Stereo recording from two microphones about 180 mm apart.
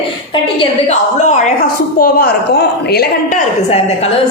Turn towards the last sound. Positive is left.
turn(degrees=60)  # may be behind; listen again after turning